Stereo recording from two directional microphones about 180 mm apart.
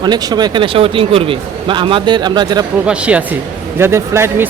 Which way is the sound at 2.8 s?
5° right (ahead or behind).